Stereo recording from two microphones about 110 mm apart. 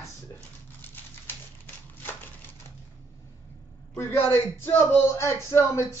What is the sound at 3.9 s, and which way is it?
A man's voice, 20° left (ahead or behind).